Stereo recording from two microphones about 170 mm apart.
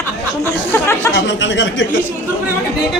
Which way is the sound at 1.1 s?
90° left.